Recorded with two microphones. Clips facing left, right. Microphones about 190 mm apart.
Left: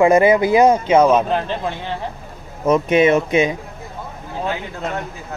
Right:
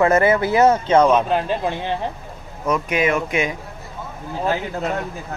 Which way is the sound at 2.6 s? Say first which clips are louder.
Left 6 dB; 25° left (ahead or behind).